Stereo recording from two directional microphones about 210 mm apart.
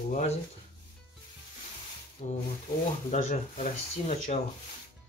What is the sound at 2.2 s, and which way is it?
Speech, 35° left (ahead or behind).